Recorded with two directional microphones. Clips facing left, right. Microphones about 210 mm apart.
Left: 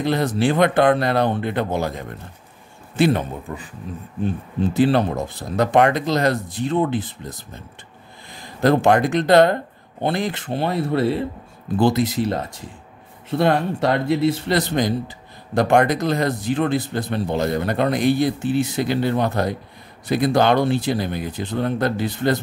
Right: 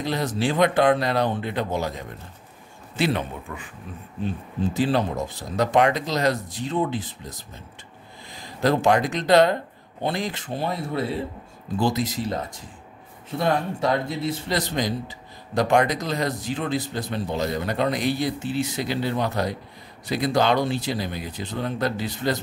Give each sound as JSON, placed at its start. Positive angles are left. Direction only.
{"t": 0.0, "sound": "a man's voice", "side_deg": 55}
{"t": 3.0, "sound": "a man's voice", "side_deg": 45}
{"t": 4.2, "sound": "a man's voice", "side_deg": 60}
{"t": 8.6, "sound": "a man's voice", "side_deg": 55}
{"t": 13.4, "sound": "a man's voice", "side_deg": 70}